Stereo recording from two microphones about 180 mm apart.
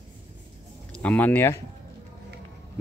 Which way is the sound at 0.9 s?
10° left (ahead or behind).